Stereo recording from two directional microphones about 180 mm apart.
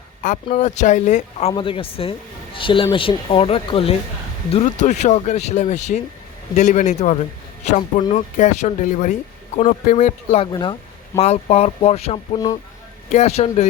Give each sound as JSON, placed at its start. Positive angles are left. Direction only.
{"t": 0.5, "sound": "speech", "side_deg": 40}
{"t": 10.5, "sound": "speech", "side_deg": 25}